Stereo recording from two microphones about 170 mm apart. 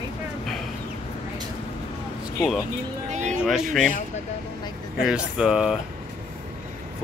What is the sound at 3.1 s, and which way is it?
Speech, 45° right (ahead or behind).